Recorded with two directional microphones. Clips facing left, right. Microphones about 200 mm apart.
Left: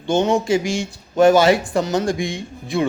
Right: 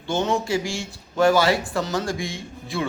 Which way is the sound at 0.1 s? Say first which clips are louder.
Left 6 dB; 15° left (ahead or behind).